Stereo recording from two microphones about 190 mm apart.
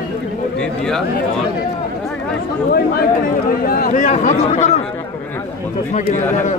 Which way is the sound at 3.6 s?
50° left (ahead or behind).